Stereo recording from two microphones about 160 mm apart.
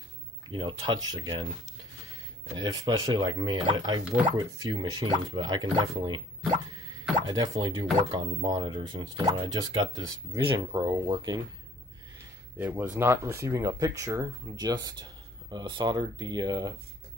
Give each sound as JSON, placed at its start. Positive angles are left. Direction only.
{"t": 0.5, "sound": "speech", "side_deg": -30}
{"t": 2.5, "sound": "speech", "side_deg": -25}
{"t": 7.2, "sound": "speech", "side_deg": -25}
{"t": 12.5, "sound": "speech", "side_deg": -10}